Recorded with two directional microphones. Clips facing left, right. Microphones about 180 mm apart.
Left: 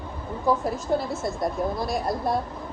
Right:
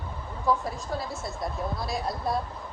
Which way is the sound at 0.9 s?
Centre (ahead or behind).